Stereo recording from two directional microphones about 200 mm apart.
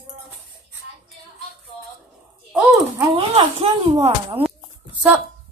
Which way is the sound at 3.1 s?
25° right (ahead or behind).